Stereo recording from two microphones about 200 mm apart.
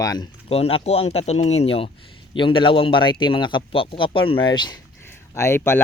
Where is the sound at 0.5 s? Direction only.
30° left (ahead or behind).